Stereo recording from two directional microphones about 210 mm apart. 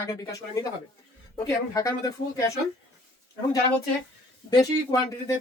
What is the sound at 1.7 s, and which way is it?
Speech, 15° left (ahead or behind).